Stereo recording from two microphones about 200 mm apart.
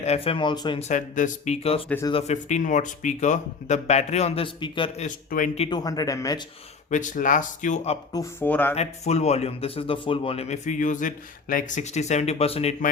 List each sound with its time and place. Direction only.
0.0 s speech: 30° left (ahead or behind)
0.8 s speech: 35° left (ahead or behind)
1.9 s speech: 15° left (ahead or behind)
2.1 s speech: 35° left (ahead or behind)
5.0 s speech: 40° left (ahead or behind)
5.6 s speech: 20° left (ahead or behind)
6.9 s speech: 40° left (ahead or behind)
8.1 s speech: 15° left (ahead or behind)
8.7 s speech: 35° left (ahead or behind)